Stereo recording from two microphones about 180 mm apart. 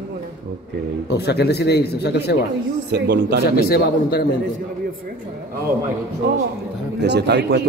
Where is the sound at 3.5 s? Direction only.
60° left (ahead or behind).